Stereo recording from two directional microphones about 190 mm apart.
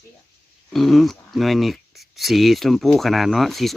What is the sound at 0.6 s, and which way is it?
Speech, centre (ahead or behind).